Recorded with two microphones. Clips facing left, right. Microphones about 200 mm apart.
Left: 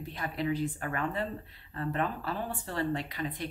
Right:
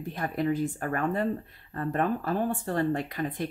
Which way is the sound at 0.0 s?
45° right (ahead or behind).